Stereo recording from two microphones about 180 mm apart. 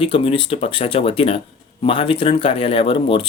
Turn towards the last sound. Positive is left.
turn(degrees=30)  # may be behind; listen again after turning